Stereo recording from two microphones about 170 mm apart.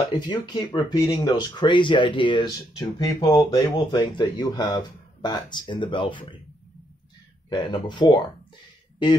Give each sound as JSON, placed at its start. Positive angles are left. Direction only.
{"t": 0.3, "sound": "speech", "side_deg": 25}
{"t": 7.4, "sound": "speech", "side_deg": 25}